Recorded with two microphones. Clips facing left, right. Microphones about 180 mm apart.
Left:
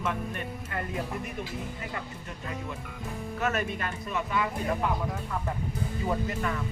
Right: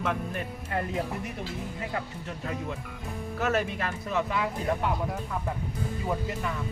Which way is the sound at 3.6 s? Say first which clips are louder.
Right 2 dB; 90° right.